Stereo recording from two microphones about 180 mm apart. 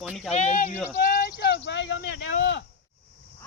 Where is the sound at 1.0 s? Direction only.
55° left (ahead or behind); by 2.0 s 80° left.